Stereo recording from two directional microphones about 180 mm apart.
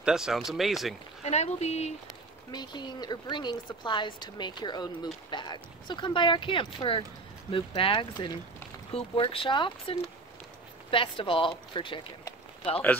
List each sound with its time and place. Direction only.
0.0 s speech: 5° right (ahead or behind)
1.2 s speech: 40° left (ahead or behind)
2.5 s speech: 25° left (ahead or behind)